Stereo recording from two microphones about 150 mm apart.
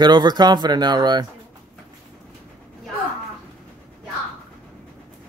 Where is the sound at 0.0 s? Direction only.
30° right (ahead or behind).